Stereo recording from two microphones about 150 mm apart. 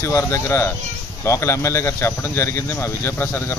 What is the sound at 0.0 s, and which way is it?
Speech, 20° left (ahead or behind).